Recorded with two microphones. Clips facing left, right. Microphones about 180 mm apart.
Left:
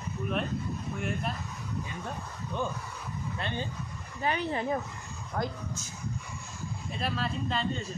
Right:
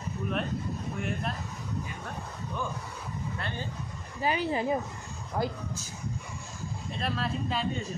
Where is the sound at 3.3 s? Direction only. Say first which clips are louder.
Left 4 dB; 20° left (ahead or behind).